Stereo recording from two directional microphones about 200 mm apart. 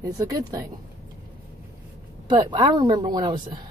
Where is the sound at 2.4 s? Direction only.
20° right (ahead or behind).